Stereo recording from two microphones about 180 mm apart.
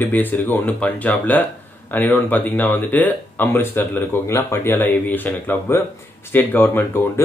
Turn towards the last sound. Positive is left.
turn(degrees=10)  # may be behind; listen again after turning